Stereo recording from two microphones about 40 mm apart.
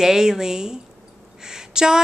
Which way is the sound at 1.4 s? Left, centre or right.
Centre.